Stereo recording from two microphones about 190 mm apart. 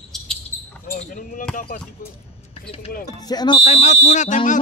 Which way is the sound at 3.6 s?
35° left (ahead or behind).